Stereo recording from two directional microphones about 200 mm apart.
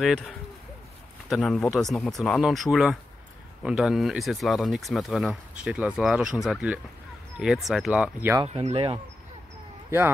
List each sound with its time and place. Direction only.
1.3 s speech: centre (ahead or behind)
8.5 s speech: 35° right (ahead or behind)
9.8 s speech: 10° right (ahead or behind)